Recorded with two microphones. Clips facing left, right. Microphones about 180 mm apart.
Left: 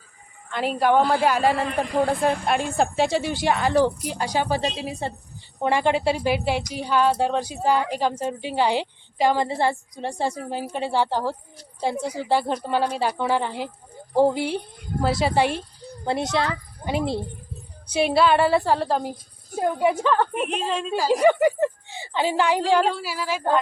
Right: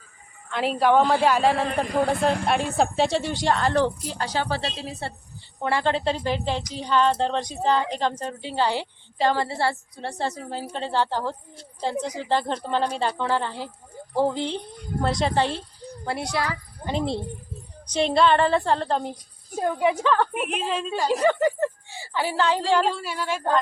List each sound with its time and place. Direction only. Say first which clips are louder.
0.5 s a woman's voice: even; centre (ahead or behind)
16.0 s a child's voice: left 4 dB; 20° left (ahead or behind)
16.8 s a woman's voice: left 1 dB; 10° left (ahead or behind)
20.5 s a woman's voice: left 2 dB; 5° right (ahead or behind)
21.1 s a woman's voice: left 4 dB; 15° left (ahead or behind)